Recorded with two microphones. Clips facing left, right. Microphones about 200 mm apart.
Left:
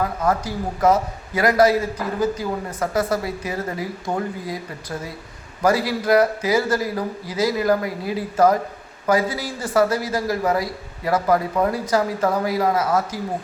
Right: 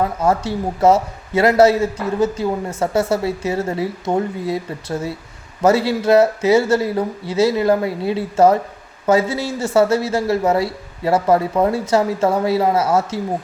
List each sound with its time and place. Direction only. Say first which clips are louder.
0.0 s a man's voice: right 4 dB; 25° right (ahead or behind)